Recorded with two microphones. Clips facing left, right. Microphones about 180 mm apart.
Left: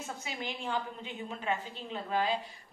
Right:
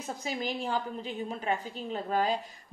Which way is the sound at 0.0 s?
35° right (ahead or behind).